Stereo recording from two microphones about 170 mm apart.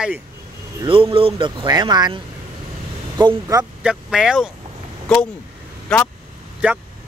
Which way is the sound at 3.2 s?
25° right (ahead or behind).